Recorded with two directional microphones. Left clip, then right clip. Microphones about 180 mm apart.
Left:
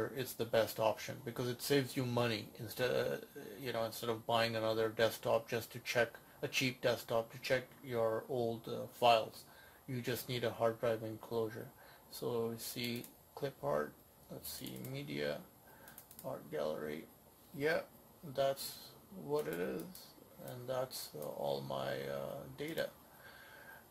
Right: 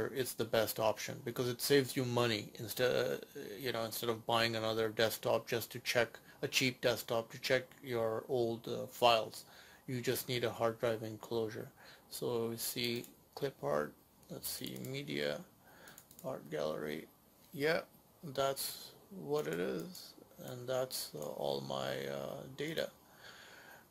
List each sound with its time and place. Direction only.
0.1 s speech: 45° right (ahead or behind)